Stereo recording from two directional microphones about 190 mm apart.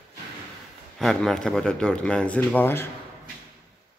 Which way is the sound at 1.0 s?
Centre (ahead or behind).